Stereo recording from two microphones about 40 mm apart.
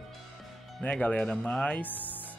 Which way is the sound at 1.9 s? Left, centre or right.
Left.